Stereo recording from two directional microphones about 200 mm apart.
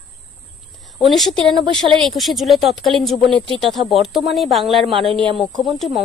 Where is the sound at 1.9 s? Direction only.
Centre (ahead or behind).